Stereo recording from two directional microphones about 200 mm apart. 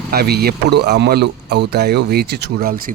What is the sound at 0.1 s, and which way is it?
Speech, 50° right (ahead or behind).